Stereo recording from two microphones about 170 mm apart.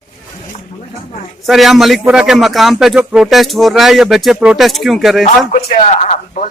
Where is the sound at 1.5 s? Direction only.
Centre (ahead or behind).